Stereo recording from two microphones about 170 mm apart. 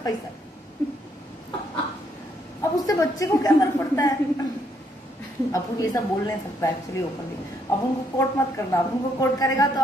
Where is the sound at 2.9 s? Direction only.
20° left (ahead or behind).